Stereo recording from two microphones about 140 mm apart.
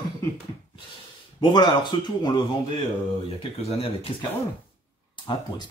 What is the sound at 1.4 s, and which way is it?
Speech, 35° left (ahead or behind).